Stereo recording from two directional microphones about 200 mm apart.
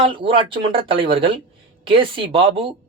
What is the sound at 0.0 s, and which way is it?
Speech, 25° right (ahead or behind).